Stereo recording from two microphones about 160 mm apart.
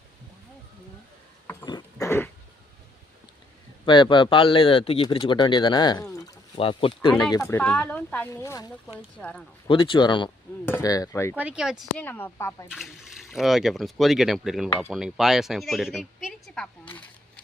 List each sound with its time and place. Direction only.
1.6 s a sound: 25° left (ahead or behind)
2.0 s throat clearing: 15° left (ahead or behind)
3.8 s speech: 30° left (ahead or behind)
6.6 s speech: 35° left (ahead or behind); by 8.6 s 20° left (ahead or behind)
9.6 s speech: 35° left (ahead or behind)
10.7 s speech: 20° left (ahead or behind)
11.3 s speech: 5° right (ahead or behind)
11.9 s speech: 10° left (ahead or behind)
12.7 s a woman's voice: centre (ahead or behind)